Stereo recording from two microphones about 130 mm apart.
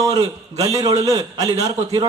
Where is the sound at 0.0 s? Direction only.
25° right (ahead or behind).